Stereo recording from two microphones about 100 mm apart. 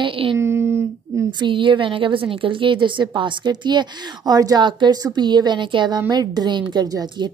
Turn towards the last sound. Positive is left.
turn(degrees=-50)  # may be behind; listen again after turning